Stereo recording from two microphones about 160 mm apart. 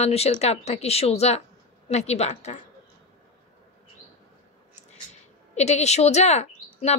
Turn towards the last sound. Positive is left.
turn(degrees=45)  # may be behind; listen again after turning